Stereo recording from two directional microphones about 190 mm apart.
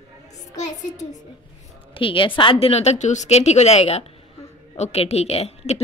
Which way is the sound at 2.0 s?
25° left (ahead or behind).